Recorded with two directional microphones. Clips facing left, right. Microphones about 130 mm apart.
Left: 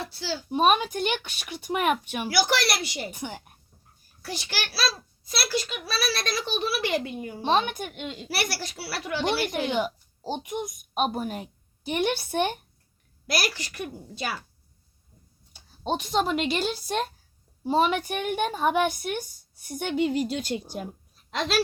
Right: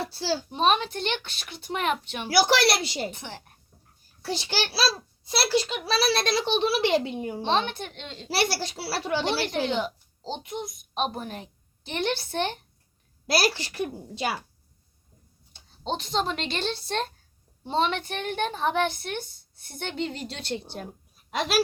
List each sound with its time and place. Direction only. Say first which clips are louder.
0.0 s speech: right 4 dB; 35° right (ahead or behind)
0.5 s a woman's voice: left 4 dB; 10° left (ahead or behind)
2.6 s a child's voice: right 4 dB; 30° right (ahead or behind)
3.1 s a woman's voice: left 4 dB; 10° left (ahead or behind)
4.2 s a child's voice: right 5 dB; 25° right (ahead or behind)
7.4 s a woman's voice: left 3 dB; 10° left (ahead or behind)
8.3 s a child's voice: right 6 dB; 30° right (ahead or behind)
9.6 s a woman's voice: left 1 dB; 10° left (ahead or behind)
13.3 s a child's voice: right 4 dB; 30° right (ahead or behind)
15.5 s a woman's voice: left 2 dB; 10° left (ahead or behind)
21.2 s speech: right 1 dB; 10° right (ahead or behind)